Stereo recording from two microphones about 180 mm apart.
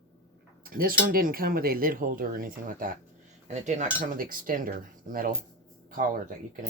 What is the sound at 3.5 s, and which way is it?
Cutlery, 40° right (ahead or behind).